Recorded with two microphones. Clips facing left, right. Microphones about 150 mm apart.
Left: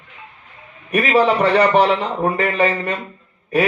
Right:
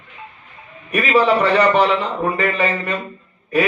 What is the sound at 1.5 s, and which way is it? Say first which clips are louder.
A man's voice: left 1 dB; 45° left (ahead or behind).